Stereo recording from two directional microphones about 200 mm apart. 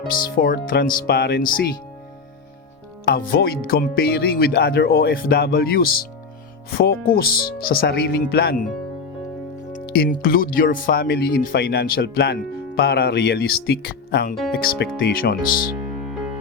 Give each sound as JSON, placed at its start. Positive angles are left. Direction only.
{"t": 0.1, "sound": "speech", "side_deg": 45}
{"t": 3.1, "sound": "speech", "side_deg": 50}
{"t": 9.7, "sound": "speech", "side_deg": 45}